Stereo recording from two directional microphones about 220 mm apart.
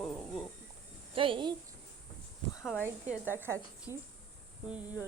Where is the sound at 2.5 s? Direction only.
10° left (ahead or behind).